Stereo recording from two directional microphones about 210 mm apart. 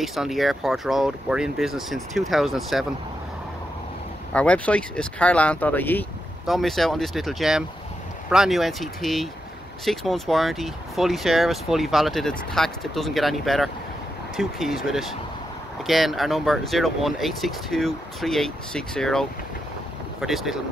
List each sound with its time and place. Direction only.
0.0 s speech: centre (ahead or behind)
4.3 s speech: 5° left (ahead or behind)